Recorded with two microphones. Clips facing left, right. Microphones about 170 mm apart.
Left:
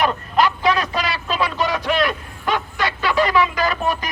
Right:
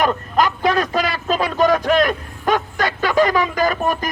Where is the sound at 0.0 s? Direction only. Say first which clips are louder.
Right 1 dB; 45° right (ahead or behind).